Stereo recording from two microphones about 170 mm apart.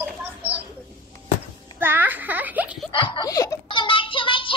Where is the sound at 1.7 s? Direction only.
10° right (ahead or behind).